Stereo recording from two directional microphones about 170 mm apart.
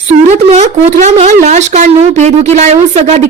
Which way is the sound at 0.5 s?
40° right (ahead or behind).